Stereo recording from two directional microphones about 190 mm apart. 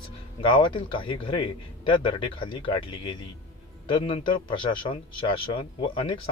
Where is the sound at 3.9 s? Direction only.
25° left (ahead or behind).